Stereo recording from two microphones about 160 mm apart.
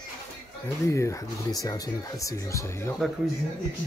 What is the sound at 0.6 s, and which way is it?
Speech, 20° left (ahead or behind).